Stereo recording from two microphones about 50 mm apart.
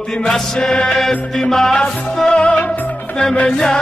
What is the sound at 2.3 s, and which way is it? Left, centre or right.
Music, left.